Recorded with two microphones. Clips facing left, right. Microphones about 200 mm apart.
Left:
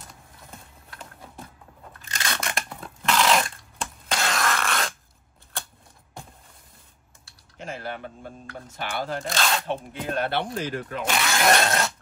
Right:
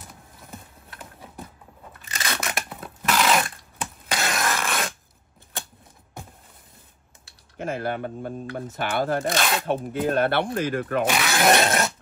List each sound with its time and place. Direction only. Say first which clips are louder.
0.5 s clip-clop: right 4 dB; 5° right (ahead or behind)
2.0 s a sound: right 1 dB; 5° right (ahead or behind)
7.5 s speech: right 7 dB; 55° right (ahead or behind)
9.4 s speech: right 1 dB; 5° right (ahead or behind)
10.0 s speech: right 4 dB; 55° right (ahead or behind)
11.4 s dog: right 2 dB; 20° right (ahead or behind)